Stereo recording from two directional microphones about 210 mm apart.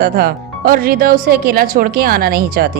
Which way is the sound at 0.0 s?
45° right (ahead or behind).